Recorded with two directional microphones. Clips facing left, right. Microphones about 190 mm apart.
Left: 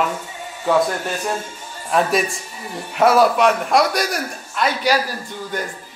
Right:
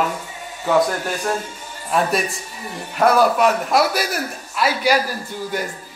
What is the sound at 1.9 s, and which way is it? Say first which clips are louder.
A man's voice: left 2 dB; centre (ahead or behind).